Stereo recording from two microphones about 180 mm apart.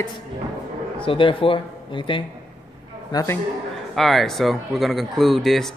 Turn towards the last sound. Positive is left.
turn(degrees=0)  # may be behind; listen again after turning